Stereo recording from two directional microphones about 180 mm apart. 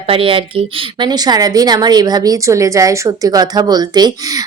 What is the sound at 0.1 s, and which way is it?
A woman's voice, 30° right (ahead or behind).